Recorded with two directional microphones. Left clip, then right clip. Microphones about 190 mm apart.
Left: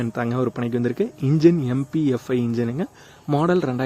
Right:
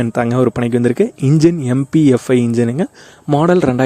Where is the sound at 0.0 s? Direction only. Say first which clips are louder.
Right 9 dB; 45° right (ahead or behind).